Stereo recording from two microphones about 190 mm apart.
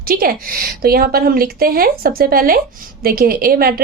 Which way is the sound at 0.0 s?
50° right (ahead or behind).